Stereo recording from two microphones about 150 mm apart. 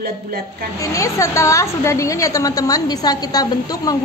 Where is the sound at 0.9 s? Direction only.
20° left (ahead or behind).